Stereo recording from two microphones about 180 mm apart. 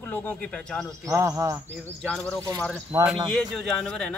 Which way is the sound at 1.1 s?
15° right (ahead or behind).